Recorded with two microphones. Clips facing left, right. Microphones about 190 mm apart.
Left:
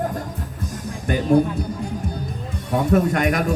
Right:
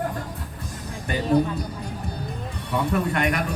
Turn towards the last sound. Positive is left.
turn(degrees=45)  # may be behind; listen again after turning